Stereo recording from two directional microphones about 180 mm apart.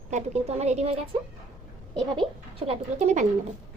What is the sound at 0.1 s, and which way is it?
Speech, 40° right (ahead or behind).